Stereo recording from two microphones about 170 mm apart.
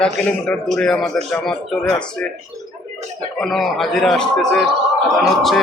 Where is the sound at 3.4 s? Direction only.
Centre (ahead or behind).